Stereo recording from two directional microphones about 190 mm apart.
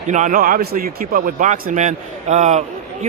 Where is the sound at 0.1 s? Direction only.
40° right (ahead or behind).